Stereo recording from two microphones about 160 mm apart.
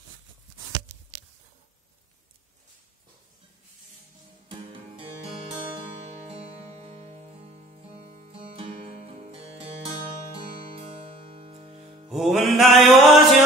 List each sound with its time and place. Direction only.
6.2 s music: 40° right (ahead or behind)
12.1 s music: centre (ahead or behind)